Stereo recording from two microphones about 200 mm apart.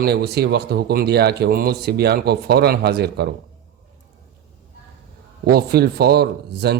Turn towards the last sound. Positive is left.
turn(degrees=-55)  # may be behind; listen again after turning